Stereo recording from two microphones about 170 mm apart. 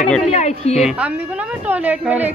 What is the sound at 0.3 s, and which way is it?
Speech, 40° left (ahead or behind).